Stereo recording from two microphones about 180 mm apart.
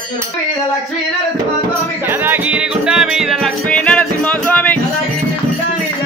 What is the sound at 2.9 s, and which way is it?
Music, 5° right (ahead or behind).